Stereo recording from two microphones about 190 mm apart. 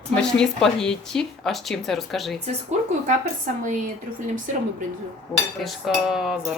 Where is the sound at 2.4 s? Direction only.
40° right (ahead or behind).